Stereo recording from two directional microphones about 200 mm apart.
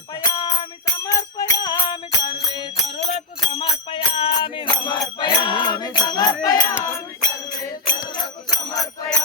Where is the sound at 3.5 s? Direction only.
25° left (ahead or behind).